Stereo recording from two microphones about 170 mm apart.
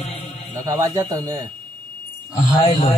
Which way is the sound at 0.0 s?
40° left (ahead or behind).